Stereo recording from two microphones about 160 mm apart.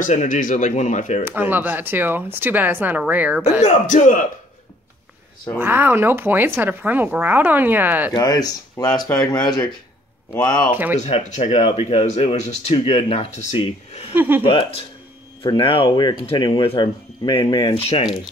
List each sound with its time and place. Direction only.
0.0 s speech: 50° left (ahead or behind)
1.2 s speech: 10° right (ahead or behind)
3.6 s speech: 50° left (ahead or behind)
5.6 s speech: 10° right (ahead or behind)
8.1 s speech: 25° left (ahead or behind)
10.7 s speech: 10° right (ahead or behind)
11.0 s speech: 40° left (ahead or behind)
14.1 s speech: 10° right (ahead or behind)
14.4 s speech: 35° left (ahead or behind)
17.7 s speech: 40° left (ahead or behind)